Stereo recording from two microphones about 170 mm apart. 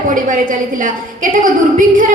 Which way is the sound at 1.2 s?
50° right (ahead or behind).